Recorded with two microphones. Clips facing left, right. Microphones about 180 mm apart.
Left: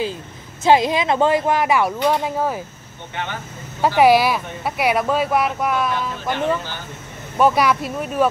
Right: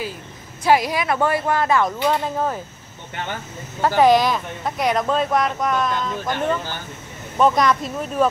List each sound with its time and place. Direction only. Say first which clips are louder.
0.7 s speech: left 3 dB; 25° left (ahead or behind)
3.8 s speech: left 1 dB; 10° left (ahead or behind)